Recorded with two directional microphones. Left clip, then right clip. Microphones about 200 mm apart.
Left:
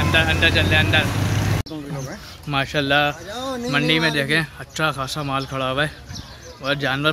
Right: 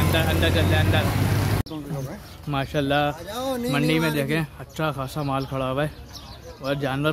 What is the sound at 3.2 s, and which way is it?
Speech, 35° right (ahead or behind).